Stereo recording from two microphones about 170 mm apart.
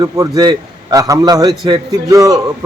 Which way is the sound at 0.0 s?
25° right (ahead or behind).